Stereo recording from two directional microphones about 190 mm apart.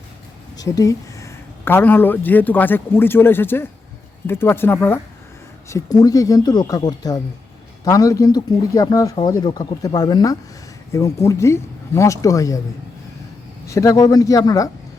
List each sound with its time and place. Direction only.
0.5 s speech: 20° left (ahead or behind)
13.7 s speech: 15° left (ahead or behind)